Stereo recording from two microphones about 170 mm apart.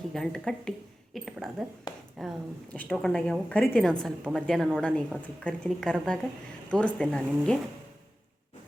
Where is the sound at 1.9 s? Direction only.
30° left (ahead or behind).